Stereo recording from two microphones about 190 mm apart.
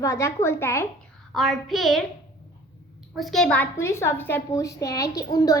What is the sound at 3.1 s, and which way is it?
A woman's voice, centre (ahead or behind).